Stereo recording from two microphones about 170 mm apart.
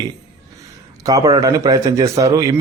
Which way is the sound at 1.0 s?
20° right (ahead or behind).